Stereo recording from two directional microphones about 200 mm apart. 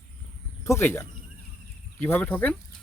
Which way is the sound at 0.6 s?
10° left (ahead or behind).